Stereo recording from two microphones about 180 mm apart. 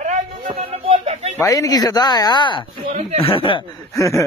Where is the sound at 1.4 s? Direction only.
20° left (ahead or behind).